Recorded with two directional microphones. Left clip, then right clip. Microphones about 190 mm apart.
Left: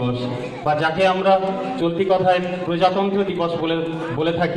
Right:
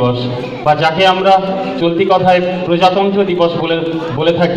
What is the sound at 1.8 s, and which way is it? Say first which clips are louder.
Speech: right 7 dB; 50° left (ahead or behind).